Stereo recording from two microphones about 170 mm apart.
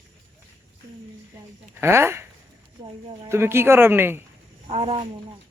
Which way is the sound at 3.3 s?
15° right (ahead or behind).